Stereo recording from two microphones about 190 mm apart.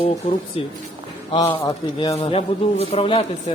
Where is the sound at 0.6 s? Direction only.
30° left (ahead or behind).